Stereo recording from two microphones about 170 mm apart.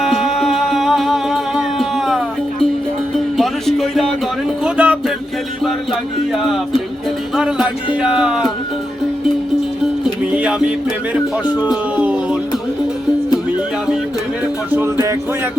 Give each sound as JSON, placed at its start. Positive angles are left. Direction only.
{"t": 0.0, "sound": "music", "side_deg": 0}
{"t": 7.3, "sound": "music", "side_deg": -5}
{"t": 10.3, "sound": "music", "side_deg": -5}
{"t": 11.4, "sound": "speech", "side_deg": 25}
{"t": 11.7, "sound": "a sound", "side_deg": -5}